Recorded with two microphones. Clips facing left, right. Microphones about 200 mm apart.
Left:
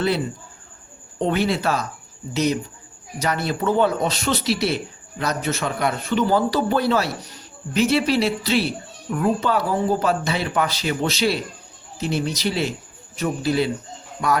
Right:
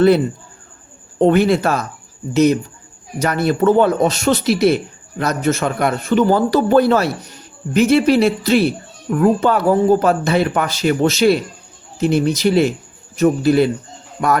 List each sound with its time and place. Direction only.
1.2 s speech: 50° right (ahead or behind)